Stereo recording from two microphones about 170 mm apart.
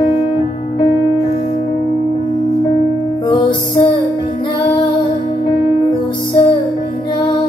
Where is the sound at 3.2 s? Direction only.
30° left (ahead or behind).